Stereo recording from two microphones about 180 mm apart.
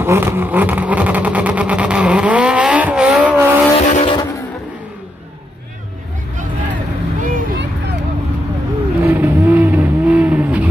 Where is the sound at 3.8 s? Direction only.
40° left (ahead or behind).